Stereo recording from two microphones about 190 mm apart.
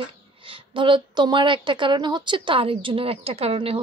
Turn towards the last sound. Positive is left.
turn(degrees=-30)  # may be behind; listen again after turning